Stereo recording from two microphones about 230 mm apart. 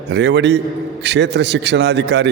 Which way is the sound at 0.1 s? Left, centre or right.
Right.